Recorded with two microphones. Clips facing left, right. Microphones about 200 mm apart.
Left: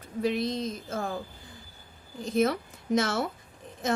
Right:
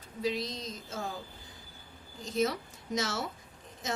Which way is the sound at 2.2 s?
55° left (ahead or behind).